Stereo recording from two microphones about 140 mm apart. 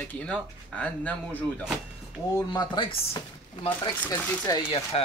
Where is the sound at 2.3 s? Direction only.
30° left (ahead or behind).